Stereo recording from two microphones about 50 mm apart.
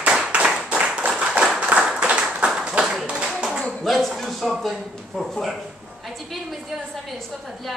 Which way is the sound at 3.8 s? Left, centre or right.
Centre.